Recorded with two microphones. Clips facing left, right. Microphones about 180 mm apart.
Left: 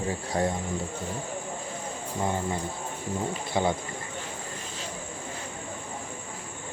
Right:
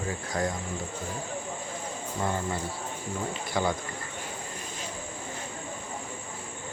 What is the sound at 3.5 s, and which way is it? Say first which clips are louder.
Cricket: left 2 dB; 20° left (ahead or behind).